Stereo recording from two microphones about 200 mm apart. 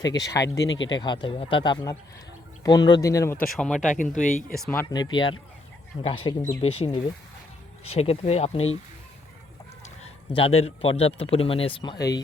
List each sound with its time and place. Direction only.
0.0 s a man's voice: 20° left (ahead or behind)
0.7 s speech: 70° left (ahead or behind)
0.9 s a man's voice: 20° left (ahead or behind)
3.5 s speech: 5° left (ahead or behind)
3.8 s speech: 40° left (ahead or behind)
4.5 s a man's voice: 5° left (ahead or behind); by 8.6 s 30° left (ahead or behind)
10.0 s a man's voice: 30° left (ahead or behind)